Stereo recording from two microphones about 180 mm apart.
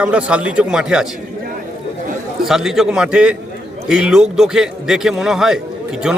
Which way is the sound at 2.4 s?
Centre (ahead or behind).